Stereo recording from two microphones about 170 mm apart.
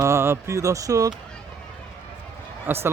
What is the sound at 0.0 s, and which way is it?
Speech, 15° right (ahead or behind).